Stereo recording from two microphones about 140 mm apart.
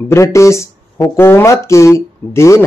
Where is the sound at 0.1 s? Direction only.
20° left (ahead or behind).